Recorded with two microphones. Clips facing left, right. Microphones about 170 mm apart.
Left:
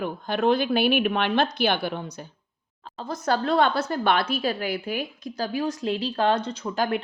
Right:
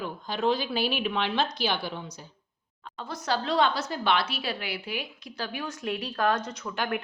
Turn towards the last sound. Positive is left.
turn(degrees=35)  # may be behind; listen again after turning